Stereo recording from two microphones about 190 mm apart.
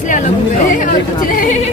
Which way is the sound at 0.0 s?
40° left (ahead or behind).